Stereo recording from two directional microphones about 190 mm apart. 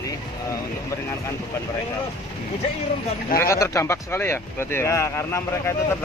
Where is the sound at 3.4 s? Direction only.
15° left (ahead or behind).